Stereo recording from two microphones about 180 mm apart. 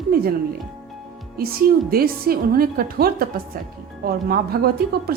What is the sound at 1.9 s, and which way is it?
A woman's voice, 55° right (ahead or behind).